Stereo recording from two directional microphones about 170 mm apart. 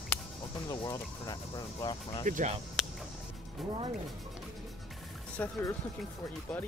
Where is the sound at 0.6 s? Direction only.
20° left (ahead or behind).